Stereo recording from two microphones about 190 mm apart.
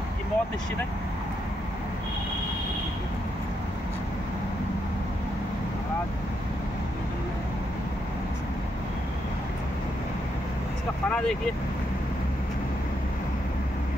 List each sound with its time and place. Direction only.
11.1 s speech: 5° left (ahead or behind)